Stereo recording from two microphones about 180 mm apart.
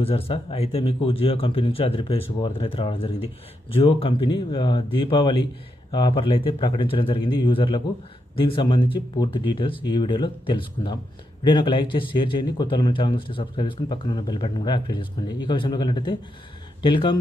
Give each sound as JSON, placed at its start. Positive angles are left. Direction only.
{"t": 0.0, "sound": "a man's voice", "side_deg": 30}